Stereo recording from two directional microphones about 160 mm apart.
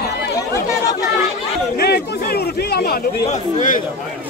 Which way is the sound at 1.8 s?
80° left.